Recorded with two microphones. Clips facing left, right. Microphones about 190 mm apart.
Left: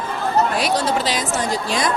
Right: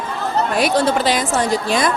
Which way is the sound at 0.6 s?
55° right (ahead or behind).